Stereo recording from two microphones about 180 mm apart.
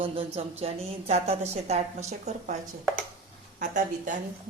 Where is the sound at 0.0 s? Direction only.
30° right (ahead or behind).